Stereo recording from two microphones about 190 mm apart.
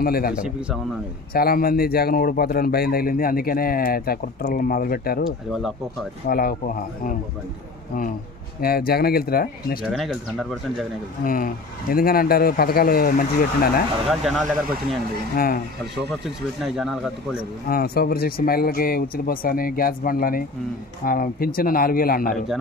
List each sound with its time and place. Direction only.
0.0 s a man's voice: 50° left (ahead or behind)
0.3 s speech: 5° right (ahead or behind)
1.3 s a man's voice: 50° left (ahead or behind)
5.5 s speech: centre (ahead or behind)
6.2 s a man's voice: 50° left (ahead or behind)
8.5 s a man's voice: 50° left (ahead or behind)
9.8 s speech: centre (ahead or behind)
11.2 s a man's voice: 50° left (ahead or behind)
14.3 s speech: 5° right (ahead or behind)
15.3 s a man's voice: 50° left (ahead or behind)
16.6 s speech: centre (ahead or behind)
17.6 s a man's voice: 55° left (ahead or behind)